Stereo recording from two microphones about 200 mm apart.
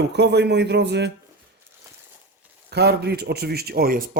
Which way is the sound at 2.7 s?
55° right (ahead or behind).